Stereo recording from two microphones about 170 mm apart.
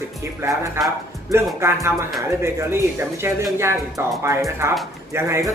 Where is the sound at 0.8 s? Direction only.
15° right (ahead or behind).